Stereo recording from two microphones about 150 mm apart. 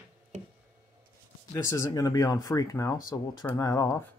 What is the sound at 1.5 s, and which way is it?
Speech, 20° left (ahead or behind).